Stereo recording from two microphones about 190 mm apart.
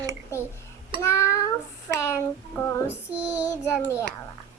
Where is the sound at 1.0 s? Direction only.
15° left (ahead or behind).